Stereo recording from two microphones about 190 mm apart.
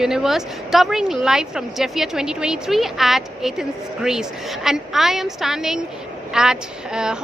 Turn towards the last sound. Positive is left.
turn(degrees=-5)  # may be behind; listen again after turning